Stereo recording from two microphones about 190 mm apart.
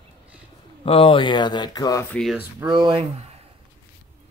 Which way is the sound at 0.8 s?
30° left (ahead or behind).